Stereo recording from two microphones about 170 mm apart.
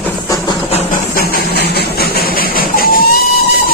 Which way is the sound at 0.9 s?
60° left (ahead or behind).